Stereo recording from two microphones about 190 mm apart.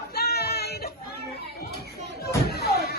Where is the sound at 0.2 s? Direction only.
55° left (ahead or behind).